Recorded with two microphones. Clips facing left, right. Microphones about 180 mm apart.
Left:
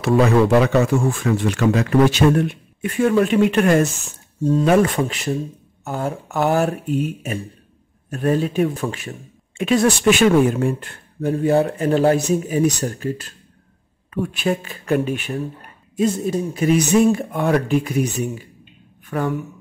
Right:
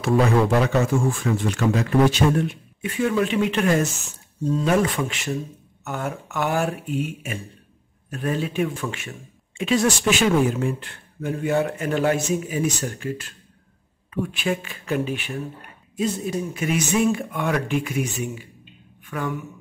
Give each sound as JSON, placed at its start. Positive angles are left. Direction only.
{"t": 0.0, "sound": "speech", "side_deg": 70}
{"t": 9.6, "sound": "a woman's voice", "side_deg": 55}